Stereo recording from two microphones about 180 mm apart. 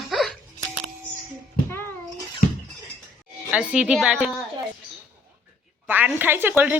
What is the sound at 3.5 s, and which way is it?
Speech, 5° right (ahead or behind).